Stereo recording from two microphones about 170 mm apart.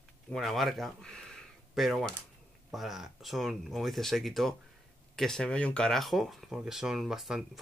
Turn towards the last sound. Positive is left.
turn(degrees=0)  # may be behind; listen again after turning